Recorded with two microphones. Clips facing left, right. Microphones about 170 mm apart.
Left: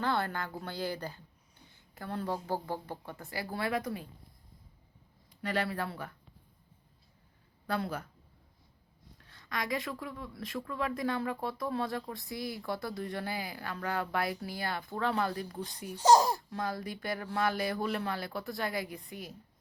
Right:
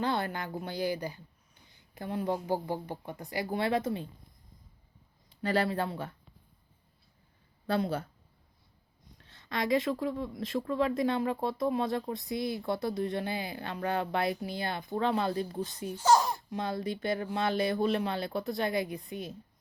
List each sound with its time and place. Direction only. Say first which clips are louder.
0.0 s speech: right 1 dB; 20° right (ahead or behind)
5.3 s speech: right 4 dB; 30° right (ahead or behind)
7.7 s speech: right 4 dB; 30° right (ahead or behind)
9.2 s speech: right 5 dB; 25° right (ahead or behind)
16.0 s speech: left 2 dB; 35° left (ahead or behind)
16.5 s speech: right 3 dB; 25° right (ahead or behind)